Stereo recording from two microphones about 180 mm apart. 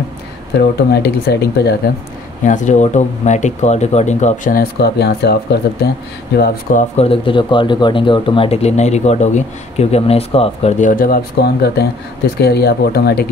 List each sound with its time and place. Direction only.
0.6 s speech: 65° left (ahead or behind)
2.4 s speech: 45° left (ahead or behind)
4.6 s speech: 65° left (ahead or behind)
6.8 s speech: 35° left (ahead or behind); by 13.3 s 60° left (ahead or behind)